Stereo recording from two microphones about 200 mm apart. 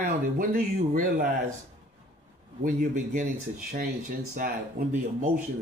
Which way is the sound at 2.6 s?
40° right (ahead or behind).